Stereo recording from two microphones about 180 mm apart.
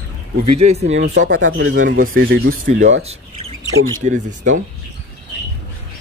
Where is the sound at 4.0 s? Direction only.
45° right (ahead or behind).